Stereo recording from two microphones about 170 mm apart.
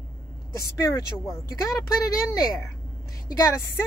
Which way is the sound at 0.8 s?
20° left (ahead or behind).